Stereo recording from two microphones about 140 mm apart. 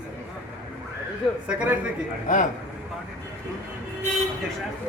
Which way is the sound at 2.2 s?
70° left (ahead or behind).